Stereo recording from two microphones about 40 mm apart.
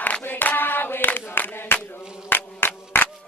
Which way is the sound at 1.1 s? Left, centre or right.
Left.